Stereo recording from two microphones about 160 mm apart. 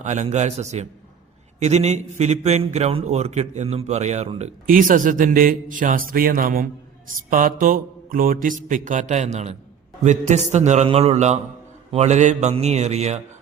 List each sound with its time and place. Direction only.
0.0 s a man's voice: 50° right (ahead or behind)
4.6 s a man's voice: 60° right (ahead or behind); by 13.1 s 45° right (ahead or behind)